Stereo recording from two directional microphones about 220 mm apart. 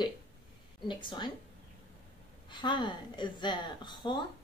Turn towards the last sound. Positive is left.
turn(degrees=20)  # may be behind; listen again after turning